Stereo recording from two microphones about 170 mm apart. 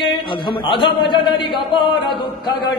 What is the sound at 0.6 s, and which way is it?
Speech, 30° left (ahead or behind).